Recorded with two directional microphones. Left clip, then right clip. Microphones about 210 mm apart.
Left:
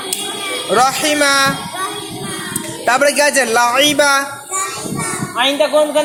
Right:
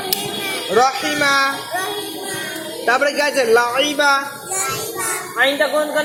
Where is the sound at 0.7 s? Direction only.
50° left (ahead or behind).